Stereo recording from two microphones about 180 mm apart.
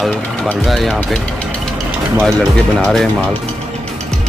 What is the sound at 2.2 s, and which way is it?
Speech, 5° left (ahead or behind).